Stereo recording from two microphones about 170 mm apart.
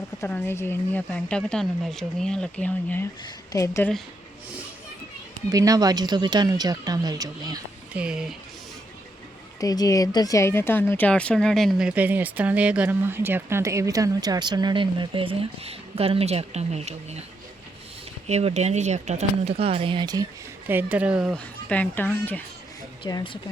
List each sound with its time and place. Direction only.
0.2 s speech: 15° left (ahead or behind)
5.5 s speech: 20° right (ahead or behind)
7.9 s speech: 5° right (ahead or behind)
9.6 s a woman's voice: 20° left (ahead or behind); by 17.2 s 40° right (ahead or behind)
18.3 s speech: 40° right (ahead or behind)
20.7 s a woman's voice: 10° right (ahead or behind)
21.3 s speech: 10° left (ahead or behind)
23.0 s speech: 25° left (ahead or behind)